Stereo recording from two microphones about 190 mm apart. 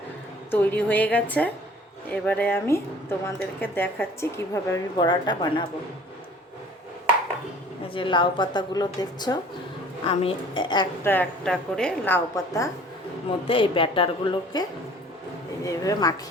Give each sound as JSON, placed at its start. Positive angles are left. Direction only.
{"t": 0.5, "sound": "a woman's voice", "side_deg": 10}
{"t": 7.9, "sound": "a woman's voice", "side_deg": 25}
{"t": 11.0, "sound": "a woman's voice", "side_deg": 10}
{"t": 13.5, "sound": "a woman's voice", "side_deg": 25}